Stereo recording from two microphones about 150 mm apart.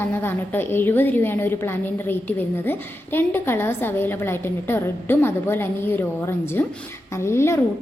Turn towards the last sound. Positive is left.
turn(degrees=15)  # may be behind; listen again after turning